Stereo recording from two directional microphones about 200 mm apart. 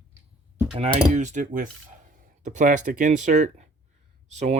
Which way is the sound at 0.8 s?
35° right (ahead or behind).